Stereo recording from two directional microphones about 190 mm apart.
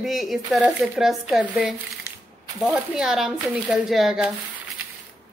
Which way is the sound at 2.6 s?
5° right (ahead or behind).